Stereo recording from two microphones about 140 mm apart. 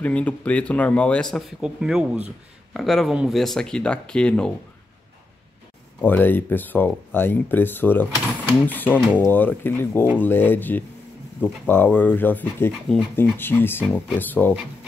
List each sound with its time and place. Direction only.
0.0 s speech: 10° left (ahead or behind)
5.9 s speech: 15° left (ahead or behind)